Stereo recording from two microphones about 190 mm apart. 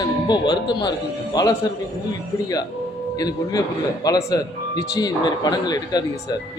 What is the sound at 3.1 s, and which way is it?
Speech, 20° left (ahead or behind).